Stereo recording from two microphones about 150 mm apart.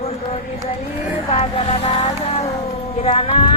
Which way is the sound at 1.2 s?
40° left (ahead or behind).